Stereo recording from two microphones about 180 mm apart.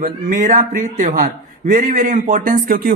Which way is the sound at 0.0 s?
50° right (ahead or behind).